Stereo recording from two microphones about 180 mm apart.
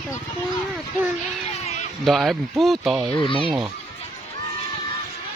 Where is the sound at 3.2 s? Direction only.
30° left (ahead or behind).